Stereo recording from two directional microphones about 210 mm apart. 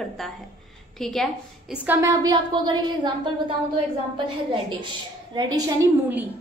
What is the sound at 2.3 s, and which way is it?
Speech, 20° right (ahead or behind).